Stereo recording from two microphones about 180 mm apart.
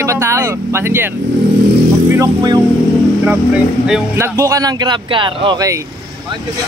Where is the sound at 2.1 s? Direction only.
25° right (ahead or behind).